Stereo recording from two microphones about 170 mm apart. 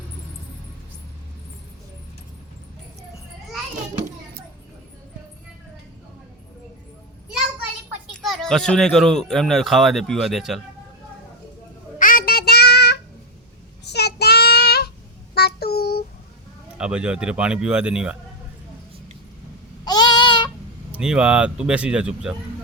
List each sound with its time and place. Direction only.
8.2 s speech: centre (ahead or behind)
11.9 s child singing: 55° left (ahead or behind)
16.7 s speech: 5° right (ahead or behind)
19.8 s a sound: 25° left (ahead or behind)
20.9 s speech: 5° right (ahead or behind)